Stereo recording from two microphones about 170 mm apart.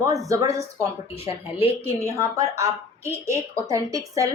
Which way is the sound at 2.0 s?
20° right (ahead or behind).